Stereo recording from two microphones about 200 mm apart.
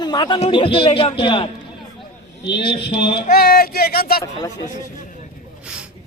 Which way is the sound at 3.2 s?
50° left (ahead or behind).